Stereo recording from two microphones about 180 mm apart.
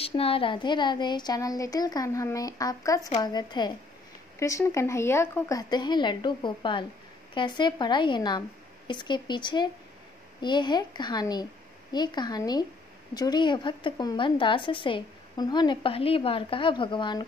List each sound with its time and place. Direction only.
0.0 s a woman's voice: 30° left (ahead or behind)